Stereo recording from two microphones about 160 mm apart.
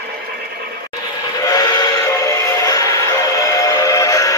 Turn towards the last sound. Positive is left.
turn(degrees=20)  # may be behind; listen again after turning